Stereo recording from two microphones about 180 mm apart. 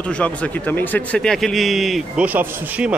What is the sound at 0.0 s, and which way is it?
Speech, 5° left (ahead or behind).